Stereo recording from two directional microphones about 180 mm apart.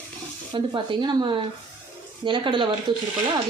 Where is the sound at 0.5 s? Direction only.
25° right (ahead or behind).